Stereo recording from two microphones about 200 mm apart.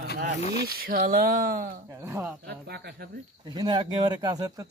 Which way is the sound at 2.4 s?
50° right (ahead or behind).